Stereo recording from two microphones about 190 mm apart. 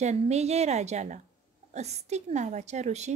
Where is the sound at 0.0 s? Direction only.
35° right (ahead or behind).